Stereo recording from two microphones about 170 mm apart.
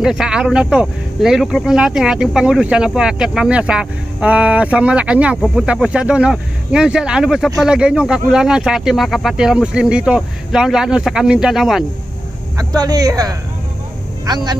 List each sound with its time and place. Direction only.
0.0 s speech: centre (ahead or behind)
12.5 s speech: 20° right (ahead or behind)